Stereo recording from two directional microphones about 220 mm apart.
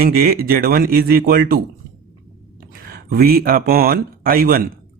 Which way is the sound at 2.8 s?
45° right (ahead or behind).